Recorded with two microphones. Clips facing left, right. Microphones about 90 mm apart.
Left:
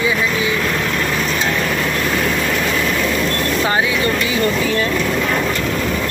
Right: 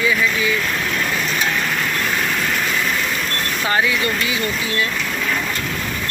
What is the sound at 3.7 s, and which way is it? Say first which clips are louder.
Speech: right 1 dB; 25° left (ahead or behind).